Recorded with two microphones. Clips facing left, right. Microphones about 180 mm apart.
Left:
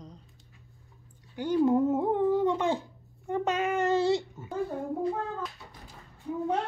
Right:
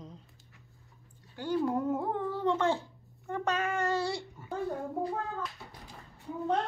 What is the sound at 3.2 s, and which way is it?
Babbling, 20° left (ahead or behind).